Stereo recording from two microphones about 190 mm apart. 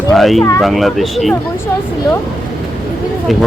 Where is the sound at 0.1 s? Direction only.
Centre (ahead or behind).